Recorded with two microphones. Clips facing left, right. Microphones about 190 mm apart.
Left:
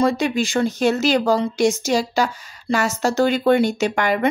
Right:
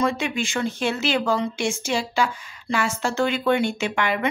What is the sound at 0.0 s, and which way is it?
Speech, 40° left (ahead or behind).